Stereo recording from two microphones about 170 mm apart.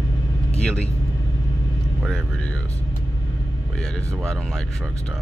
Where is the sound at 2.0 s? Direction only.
5° left (ahead or behind).